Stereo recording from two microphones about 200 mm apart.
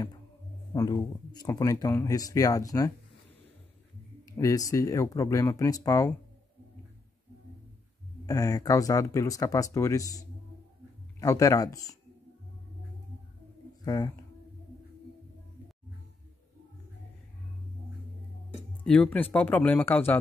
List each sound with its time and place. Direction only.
0.7 s speech: 20° left (ahead or behind)
4.3 s speech: 15° left (ahead or behind)
8.3 s speech: 15° left (ahead or behind)
13.8 s speech: 20° left (ahead or behind)
18.9 s speech: 5° left (ahead or behind)